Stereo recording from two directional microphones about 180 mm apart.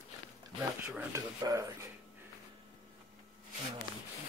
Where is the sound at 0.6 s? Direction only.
15° right (ahead or behind).